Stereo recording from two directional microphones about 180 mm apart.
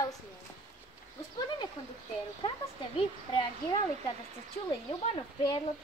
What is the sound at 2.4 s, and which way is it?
Speech, 25° left (ahead or behind).